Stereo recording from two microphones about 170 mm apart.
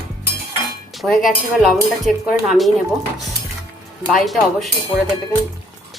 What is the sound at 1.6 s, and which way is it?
A woman's voice, centre (ahead or behind).